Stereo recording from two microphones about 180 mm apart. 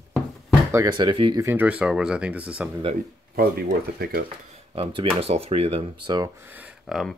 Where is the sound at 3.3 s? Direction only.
60° right (ahead or behind).